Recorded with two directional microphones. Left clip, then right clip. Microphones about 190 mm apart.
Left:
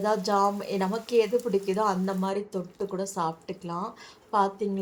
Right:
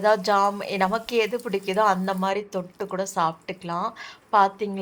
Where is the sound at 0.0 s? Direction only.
15° right (ahead or behind).